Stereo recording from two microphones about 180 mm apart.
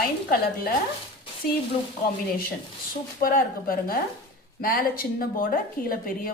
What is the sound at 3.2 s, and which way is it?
A woman's voice, 50° left (ahead or behind).